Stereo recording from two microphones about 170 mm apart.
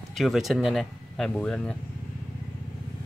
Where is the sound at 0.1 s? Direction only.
Centre (ahead or behind).